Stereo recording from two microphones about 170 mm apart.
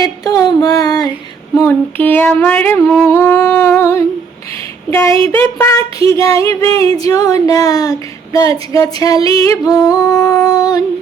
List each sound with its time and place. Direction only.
0.0 s speech: 20° left (ahead or behind)
1.5 s a sound: 10° left (ahead or behind)
7.0 s speech: 20° left (ahead or behind)